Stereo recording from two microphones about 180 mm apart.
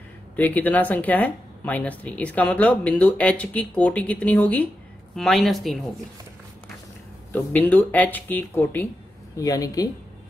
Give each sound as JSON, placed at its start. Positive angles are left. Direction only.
{"t": 0.4, "sound": "a woman's voice", "side_deg": 10}
{"t": 7.3, "sound": "speech", "side_deg": 10}